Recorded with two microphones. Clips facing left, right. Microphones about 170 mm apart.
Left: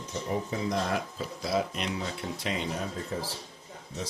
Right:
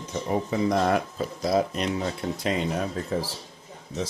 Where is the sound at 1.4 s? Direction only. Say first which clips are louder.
Right 6 dB; 40° right (ahead or behind).